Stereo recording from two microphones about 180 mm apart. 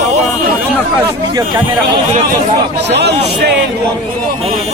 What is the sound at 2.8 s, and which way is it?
Speech, 70° right (ahead or behind).